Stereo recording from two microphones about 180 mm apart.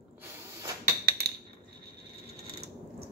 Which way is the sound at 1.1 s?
65° right (ahead or behind).